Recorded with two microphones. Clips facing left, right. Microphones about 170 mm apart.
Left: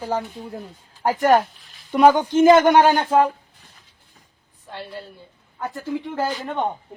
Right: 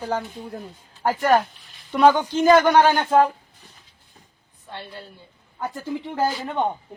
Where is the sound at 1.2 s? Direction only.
5° left (ahead or behind).